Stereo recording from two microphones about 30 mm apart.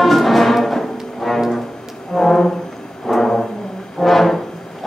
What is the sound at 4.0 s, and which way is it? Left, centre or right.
Brass instrument, centre.